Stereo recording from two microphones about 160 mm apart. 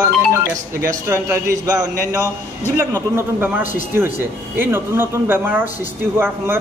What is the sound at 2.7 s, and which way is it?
A man's voice, 15° right (ahead or behind).